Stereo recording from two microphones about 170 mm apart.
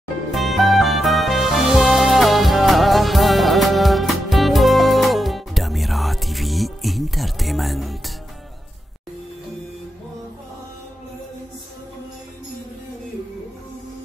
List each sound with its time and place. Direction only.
0.3 s music: centre (ahead or behind)